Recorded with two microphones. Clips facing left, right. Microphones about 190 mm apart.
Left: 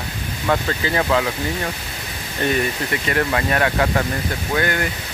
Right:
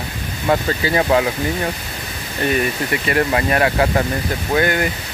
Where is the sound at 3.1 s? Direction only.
20° right (ahead or behind).